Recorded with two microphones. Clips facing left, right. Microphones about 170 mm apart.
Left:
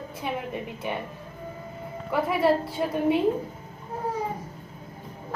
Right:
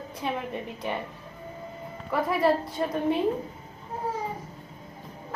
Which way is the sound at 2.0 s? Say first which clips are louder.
Left 1 dB; centre (ahead or behind).